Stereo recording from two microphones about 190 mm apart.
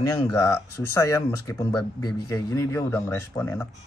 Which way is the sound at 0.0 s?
15° left (ahead or behind).